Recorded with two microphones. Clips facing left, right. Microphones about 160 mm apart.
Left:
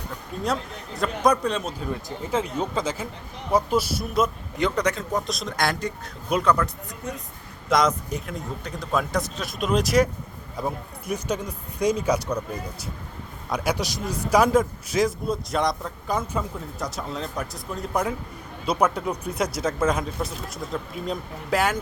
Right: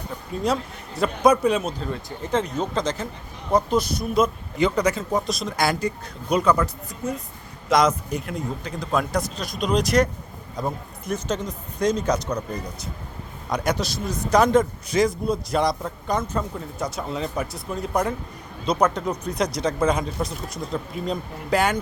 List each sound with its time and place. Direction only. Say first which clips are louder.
0.4 s a man's voice: right 3 dB; centre (ahead or behind)
2.3 s a man's voice: right 2 dB; 5° left (ahead or behind)
13.5 s a man's voice: right 1 dB; 10° left (ahead or behind)